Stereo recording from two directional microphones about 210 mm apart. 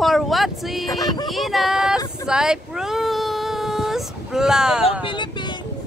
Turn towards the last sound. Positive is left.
turn(degrees=20)  # may be behind; listen again after turning